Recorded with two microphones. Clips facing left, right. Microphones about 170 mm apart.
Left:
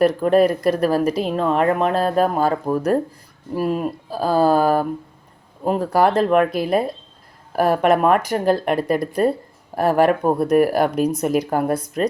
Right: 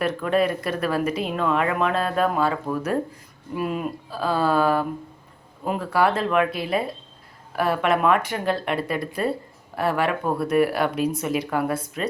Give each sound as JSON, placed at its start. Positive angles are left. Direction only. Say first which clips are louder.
{"t": 0.0, "sound": "speech", "louder": "left 7 dB", "side_deg": 40}